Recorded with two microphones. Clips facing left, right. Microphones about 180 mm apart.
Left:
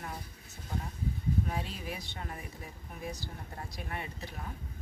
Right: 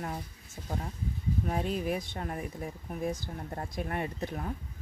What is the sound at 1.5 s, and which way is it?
Speech, 45° right (ahead or behind).